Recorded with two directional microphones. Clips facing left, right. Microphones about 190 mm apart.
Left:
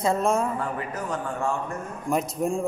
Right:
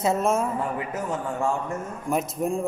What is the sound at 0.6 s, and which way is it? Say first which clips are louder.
Speech: right 2 dB; 20° right (ahead or behind).